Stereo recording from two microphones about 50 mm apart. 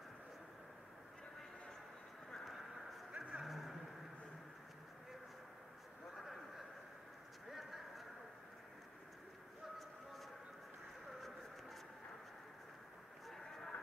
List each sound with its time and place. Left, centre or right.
2.3 s vehicle: centre
3.1 s vehicle: right
3.4 s vehicle: centre
11.1 s a sound: centre
13.3 s vehicle: centre